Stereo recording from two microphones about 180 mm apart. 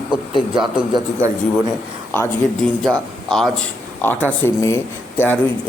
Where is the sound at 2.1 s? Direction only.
10° left (ahead or behind).